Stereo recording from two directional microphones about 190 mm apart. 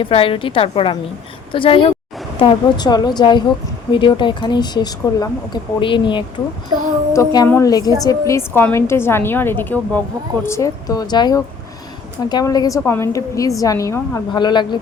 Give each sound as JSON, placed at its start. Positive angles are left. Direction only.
{"t": 0.0, "sound": "speech", "side_deg": 30}
{"t": 7.1, "sound": "a woman's voice", "side_deg": 15}